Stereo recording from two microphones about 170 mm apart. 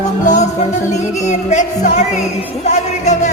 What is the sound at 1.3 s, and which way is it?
Speech, 45° left (ahead or behind).